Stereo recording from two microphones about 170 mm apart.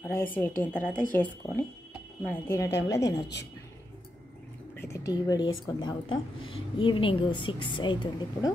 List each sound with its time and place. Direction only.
0.0 s a woman's voice: 10° left (ahead or behind)
4.7 s a woman's voice: 15° left (ahead or behind)